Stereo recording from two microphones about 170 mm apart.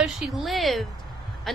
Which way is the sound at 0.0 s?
Centre (ahead or behind).